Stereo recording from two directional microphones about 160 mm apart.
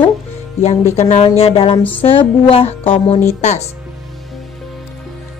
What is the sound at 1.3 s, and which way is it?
A woman's voice, 40° left (ahead or behind).